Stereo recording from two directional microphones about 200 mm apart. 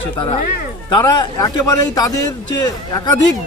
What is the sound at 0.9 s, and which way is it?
A man's voice, 20° left (ahead or behind).